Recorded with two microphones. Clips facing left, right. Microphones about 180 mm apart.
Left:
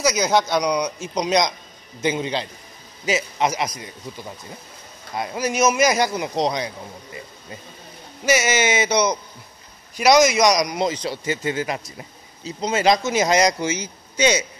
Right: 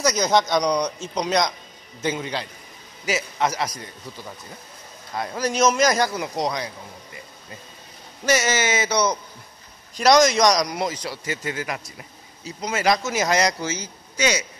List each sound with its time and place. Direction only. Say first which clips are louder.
0.0 s a man's voice: left 1 dB; 5° left (ahead or behind)
5.1 s speech: left 1 dB; 15° left (ahead or behind)
8.3 s a man's voice: left 2 dB; 10° left (ahead or behind)